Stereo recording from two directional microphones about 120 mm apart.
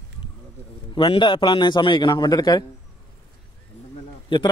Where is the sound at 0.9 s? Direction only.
45° left (ahead or behind).